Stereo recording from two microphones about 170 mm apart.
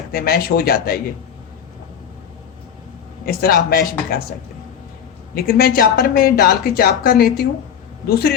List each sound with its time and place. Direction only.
0.1 s speech: 65° left (ahead or behind)
3.2 s speech: 60° left (ahead or behind)
5.3 s speech: 65° left (ahead or behind)